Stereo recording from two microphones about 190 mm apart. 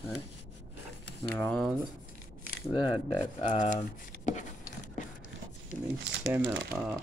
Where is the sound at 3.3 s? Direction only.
40° left (ahead or behind).